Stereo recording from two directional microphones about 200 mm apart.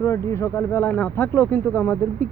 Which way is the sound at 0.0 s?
15° left (ahead or behind).